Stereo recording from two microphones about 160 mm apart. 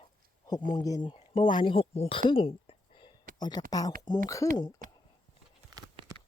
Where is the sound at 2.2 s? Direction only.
35° left (ahead or behind).